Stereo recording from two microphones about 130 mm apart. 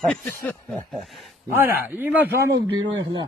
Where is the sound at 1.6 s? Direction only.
15° right (ahead or behind).